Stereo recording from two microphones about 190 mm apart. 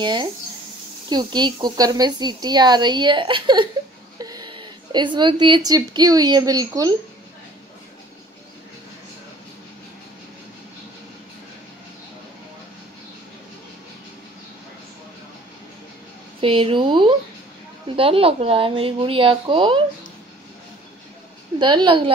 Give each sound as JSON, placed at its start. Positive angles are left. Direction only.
{"t": 0.0, "sound": "a woman's voice", "side_deg": -25}
{"t": 16.3, "sound": "speech", "side_deg": -30}
{"t": 21.5, "sound": "speech", "side_deg": -25}